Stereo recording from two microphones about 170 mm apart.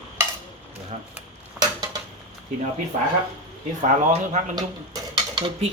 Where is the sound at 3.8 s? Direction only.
45° right (ahead or behind).